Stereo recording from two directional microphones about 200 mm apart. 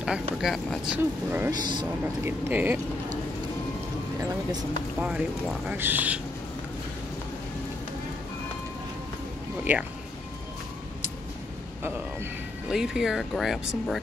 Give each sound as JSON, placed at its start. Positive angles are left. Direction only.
{"t": 0.0, "sound": "speech", "side_deg": -5}
{"t": 1.5, "sound": "speech", "side_deg": -20}
{"t": 2.2, "sound": "speech", "side_deg": -10}
{"t": 5.0, "sound": "speech", "side_deg": -5}
{"t": 9.7, "sound": "speech", "side_deg": -10}
{"t": 11.8, "sound": "speech", "side_deg": -10}